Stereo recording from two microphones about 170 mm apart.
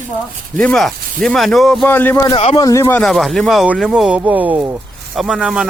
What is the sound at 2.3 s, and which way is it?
Speech, 35° left (ahead or behind).